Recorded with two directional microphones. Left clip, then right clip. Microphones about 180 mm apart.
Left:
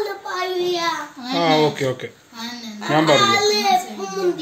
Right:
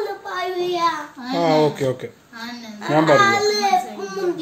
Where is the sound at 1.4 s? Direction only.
15° right (ahead or behind).